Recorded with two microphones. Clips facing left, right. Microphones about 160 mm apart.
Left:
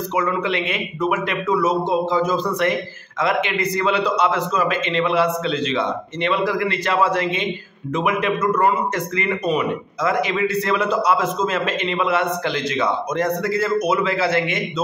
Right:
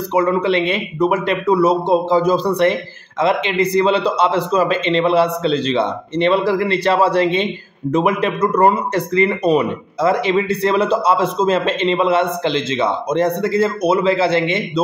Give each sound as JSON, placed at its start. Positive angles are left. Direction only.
{"t": 0.1, "sound": "a man's voice", "side_deg": -35}